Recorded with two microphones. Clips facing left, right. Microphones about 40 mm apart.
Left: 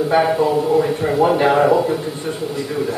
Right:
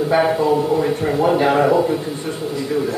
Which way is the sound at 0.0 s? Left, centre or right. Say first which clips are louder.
Left 1 dB; centre.